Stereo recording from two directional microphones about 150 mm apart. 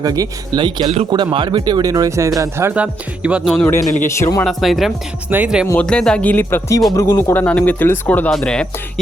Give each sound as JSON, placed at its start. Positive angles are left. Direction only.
{"t": 0.0, "sound": "speech", "side_deg": -25}
{"t": 4.0, "sound": "speech", "side_deg": 15}
{"t": 4.4, "sound": "speech", "side_deg": 0}
{"t": 5.7, "sound": "speech", "side_deg": 5}